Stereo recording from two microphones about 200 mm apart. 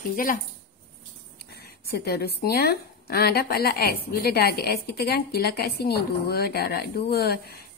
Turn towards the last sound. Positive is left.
turn(degrees=50)  # may be behind; listen again after turning